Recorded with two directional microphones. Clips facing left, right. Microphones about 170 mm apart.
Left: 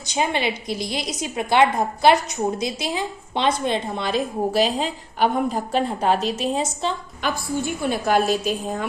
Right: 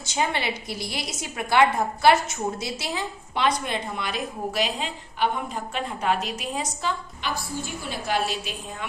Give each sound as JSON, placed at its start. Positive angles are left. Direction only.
{"t": 0.0, "sound": "a woman's voice", "side_deg": 20}
{"t": 7.2, "sound": "a woman's voice", "side_deg": 55}